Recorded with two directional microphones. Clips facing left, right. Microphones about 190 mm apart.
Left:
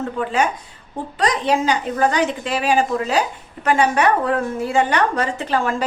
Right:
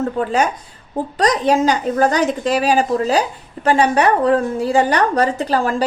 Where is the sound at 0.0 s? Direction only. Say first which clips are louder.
Right 3 dB; 40° right (ahead or behind).